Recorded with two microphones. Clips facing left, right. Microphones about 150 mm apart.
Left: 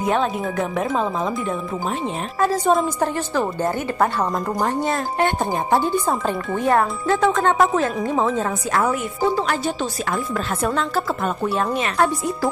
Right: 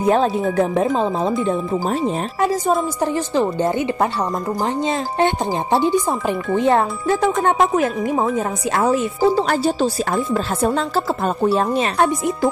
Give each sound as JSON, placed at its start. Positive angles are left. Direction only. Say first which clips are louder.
{"t": 0.0, "sound": "speech", "louder": "right 4 dB", "side_deg": -35}
{"t": 1.9, "sound": "speech", "louder": "right 4 dB", "side_deg": -40}
{"t": 3.0, "sound": "speech", "louder": "right 3 dB", "side_deg": -15}
{"t": 4.6, "sound": "speech", "louder": "right 1 dB", "side_deg": -20}
{"t": 6.6, "sound": "a child's voice", "louder": "right 1 dB", "side_deg": -25}
{"t": 8.7, "sound": "speech", "louder": "right 4 dB", "side_deg": -30}